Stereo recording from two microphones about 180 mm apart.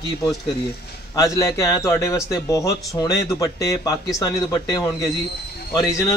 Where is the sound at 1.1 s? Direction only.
20° left (ahead or behind).